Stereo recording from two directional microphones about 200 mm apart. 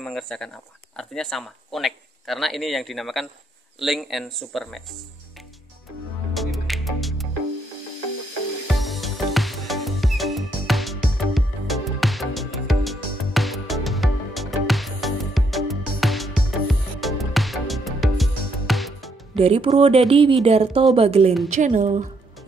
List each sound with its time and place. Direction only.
0.0 s speech: centre (ahead or behind)
6.3 s music: centre (ahead or behind)
8.7 s music: centre (ahead or behind)
19.3 s speech: 30° right (ahead or behind)